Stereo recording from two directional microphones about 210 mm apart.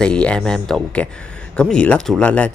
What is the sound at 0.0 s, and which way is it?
Speech, 5° left (ahead or behind).